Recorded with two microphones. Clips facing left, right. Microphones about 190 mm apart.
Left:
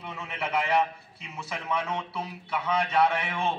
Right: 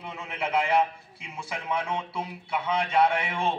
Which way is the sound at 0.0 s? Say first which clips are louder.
Right 2 dB; 10° right (ahead or behind).